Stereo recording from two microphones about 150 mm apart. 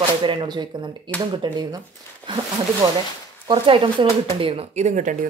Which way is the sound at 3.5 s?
35° right (ahead or behind).